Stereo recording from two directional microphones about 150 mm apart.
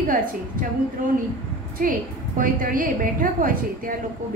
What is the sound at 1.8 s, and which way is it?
A woman's voice, 65° right (ahead or behind).